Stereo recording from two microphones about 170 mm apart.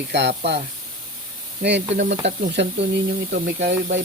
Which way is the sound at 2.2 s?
90° right.